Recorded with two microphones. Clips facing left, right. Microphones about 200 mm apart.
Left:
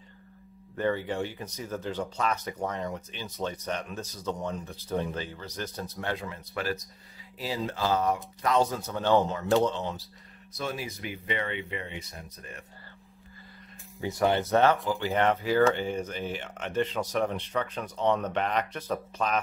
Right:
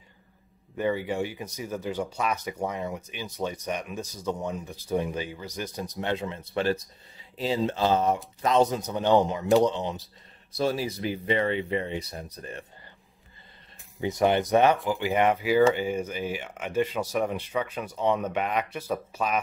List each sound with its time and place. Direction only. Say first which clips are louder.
0.7 s speech: right 2 dB; 10° right (ahead or behind)
10.5 s speech: right 7 dB; 30° right (ahead or behind)
14.0 s speech: right 3 dB; 20° right (ahead or behind)